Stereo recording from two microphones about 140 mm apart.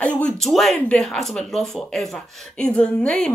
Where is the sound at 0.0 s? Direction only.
10° left (ahead or behind).